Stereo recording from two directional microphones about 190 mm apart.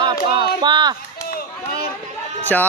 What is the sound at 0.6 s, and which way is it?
Children playing, 25° right (ahead or behind).